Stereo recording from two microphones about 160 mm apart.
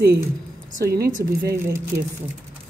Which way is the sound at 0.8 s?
75° right (ahead or behind).